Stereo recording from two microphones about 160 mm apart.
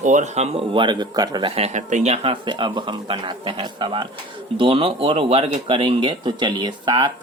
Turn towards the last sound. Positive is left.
turn(degrees=-30)  # may be behind; listen again after turning